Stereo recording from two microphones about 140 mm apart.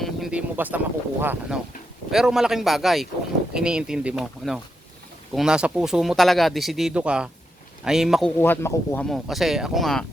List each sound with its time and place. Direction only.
0.0 s speech: 5° right (ahead or behind)
2.0 s speech: 5° right (ahead or behind)
8.4 s speech: 15° left (ahead or behind)
9.0 s speech: centre (ahead or behind)